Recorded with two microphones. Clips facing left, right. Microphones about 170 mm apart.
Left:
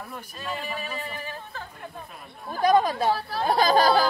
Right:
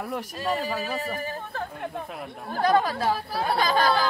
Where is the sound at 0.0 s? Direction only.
80° right.